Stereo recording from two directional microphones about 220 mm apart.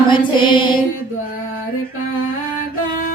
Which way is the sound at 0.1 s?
20° left (ahead or behind).